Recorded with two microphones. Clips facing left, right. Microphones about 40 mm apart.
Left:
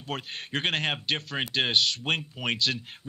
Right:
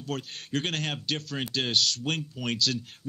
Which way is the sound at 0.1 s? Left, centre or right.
Left.